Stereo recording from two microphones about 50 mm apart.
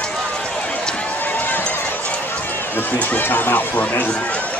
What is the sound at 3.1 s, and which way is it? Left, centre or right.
Speech, left.